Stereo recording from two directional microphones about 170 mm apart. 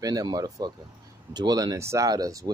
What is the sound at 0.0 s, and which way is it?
Speech, 20° right (ahead or behind).